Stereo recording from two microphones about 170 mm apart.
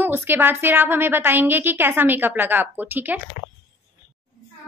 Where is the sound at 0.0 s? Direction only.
10° right (ahead or behind).